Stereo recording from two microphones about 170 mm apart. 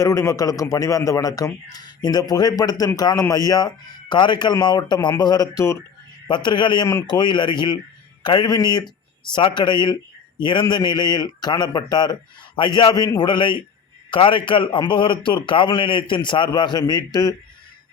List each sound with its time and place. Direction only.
0.0 s a man's voice: 15° left (ahead or behind)